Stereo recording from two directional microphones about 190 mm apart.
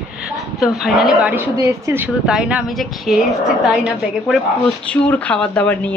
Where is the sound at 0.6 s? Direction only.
Centre (ahead or behind).